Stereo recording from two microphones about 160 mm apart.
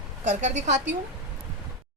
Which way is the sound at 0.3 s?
50° right (ahead or behind).